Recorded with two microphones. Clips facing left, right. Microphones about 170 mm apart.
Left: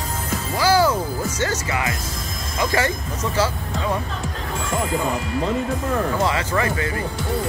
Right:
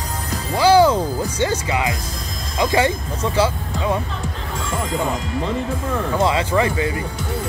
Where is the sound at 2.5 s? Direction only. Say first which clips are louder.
Right 4 dB; 15° right (ahead or behind).